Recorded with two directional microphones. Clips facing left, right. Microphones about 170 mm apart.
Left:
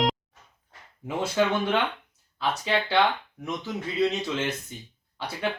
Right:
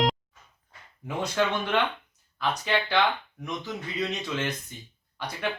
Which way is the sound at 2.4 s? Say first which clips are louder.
Left 1 dB; 30° left (ahead or behind).